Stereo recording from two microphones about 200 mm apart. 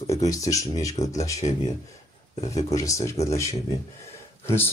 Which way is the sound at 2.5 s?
15° left (ahead or behind).